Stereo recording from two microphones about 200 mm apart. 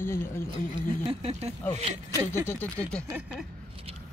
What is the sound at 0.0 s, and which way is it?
Speech, 10° left (ahead or behind).